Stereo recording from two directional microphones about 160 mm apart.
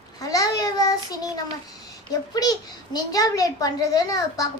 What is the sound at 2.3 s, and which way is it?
A child's voice, 25° left (ahead or behind).